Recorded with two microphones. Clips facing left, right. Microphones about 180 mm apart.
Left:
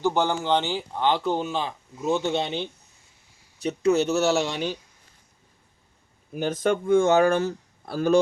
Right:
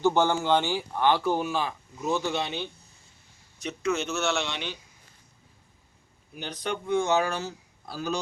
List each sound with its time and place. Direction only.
0.0 s speech: 15° left (ahead or behind); by 4.8 s 40° left (ahead or behind)
6.3 s speech: 45° left (ahead or behind)